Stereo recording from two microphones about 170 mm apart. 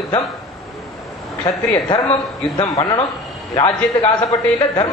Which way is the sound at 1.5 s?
Centre (ahead or behind).